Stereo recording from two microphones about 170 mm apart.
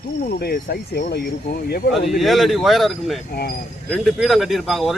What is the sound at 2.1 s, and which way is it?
A man's voice, centre (ahead or behind).